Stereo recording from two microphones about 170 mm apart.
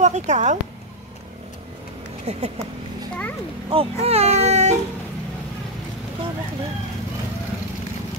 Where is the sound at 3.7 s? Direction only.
40° right (ahead or behind).